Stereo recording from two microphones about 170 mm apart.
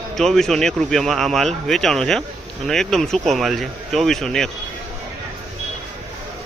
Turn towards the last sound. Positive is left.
turn(degrees=5)  # may be behind; listen again after turning